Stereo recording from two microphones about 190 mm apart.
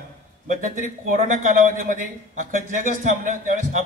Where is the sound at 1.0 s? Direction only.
45° right (ahead or behind).